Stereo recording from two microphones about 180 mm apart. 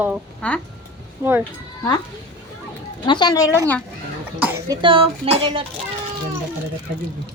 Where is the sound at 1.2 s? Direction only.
10° right (ahead or behind).